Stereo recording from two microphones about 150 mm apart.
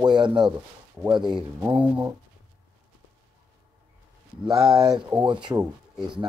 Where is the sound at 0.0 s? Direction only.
30° right (ahead or behind).